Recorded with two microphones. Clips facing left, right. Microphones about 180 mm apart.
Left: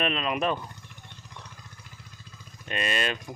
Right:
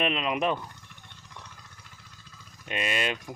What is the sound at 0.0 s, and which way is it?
Speech, 15° right (ahead or behind).